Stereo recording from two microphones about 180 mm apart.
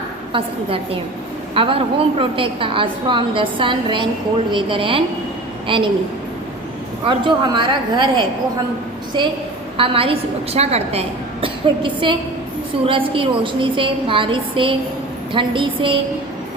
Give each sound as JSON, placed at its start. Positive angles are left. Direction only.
{"t": 1.5, "sound": "a woman's voice", "side_deg": -30}
{"t": 7.1, "sound": "a woman's voice", "side_deg": -25}